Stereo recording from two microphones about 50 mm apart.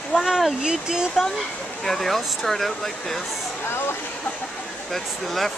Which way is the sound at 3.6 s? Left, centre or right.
Left.